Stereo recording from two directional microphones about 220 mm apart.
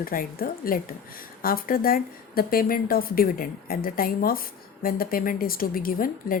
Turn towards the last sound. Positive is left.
turn(degrees=40)  # may be behind; listen again after turning